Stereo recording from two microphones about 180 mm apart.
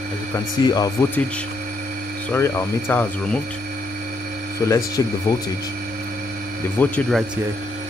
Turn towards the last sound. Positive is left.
turn(degrees=10)  # may be behind; listen again after turning